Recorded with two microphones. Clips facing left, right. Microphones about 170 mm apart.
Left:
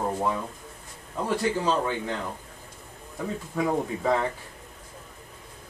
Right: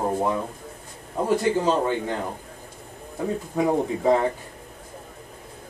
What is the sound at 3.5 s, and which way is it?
Speech, 25° right (ahead or behind).